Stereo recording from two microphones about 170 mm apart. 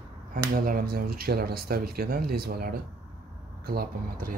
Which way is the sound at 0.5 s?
55° right (ahead or behind).